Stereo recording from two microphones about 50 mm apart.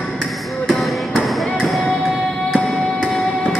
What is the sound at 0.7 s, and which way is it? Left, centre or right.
Music, centre.